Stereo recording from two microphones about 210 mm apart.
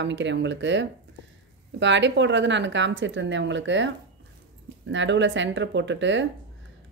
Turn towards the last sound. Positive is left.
turn(degrees=-60)  # may be behind; listen again after turning